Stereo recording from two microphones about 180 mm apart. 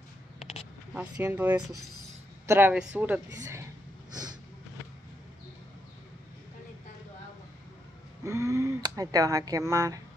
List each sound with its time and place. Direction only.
1.2 s a woman's voice: 10° right (ahead or behind)
8.2 s speech: 15° right (ahead or behind)